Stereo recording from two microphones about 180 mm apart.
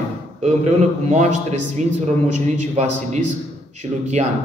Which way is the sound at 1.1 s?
40° right (ahead or behind).